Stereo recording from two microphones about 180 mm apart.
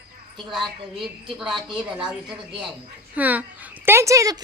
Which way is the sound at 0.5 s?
Centre (ahead or behind).